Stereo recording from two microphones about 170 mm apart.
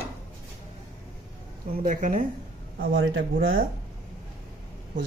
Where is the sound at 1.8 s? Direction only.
50° right (ahead or behind).